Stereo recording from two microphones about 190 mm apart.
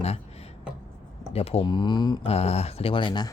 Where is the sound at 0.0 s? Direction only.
35° left (ahead or behind).